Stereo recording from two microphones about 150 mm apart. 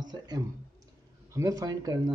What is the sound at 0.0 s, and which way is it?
Speech, 30° right (ahead or behind).